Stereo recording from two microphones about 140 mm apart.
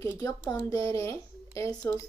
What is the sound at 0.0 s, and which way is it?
A woman's voice, 20° left (ahead or behind).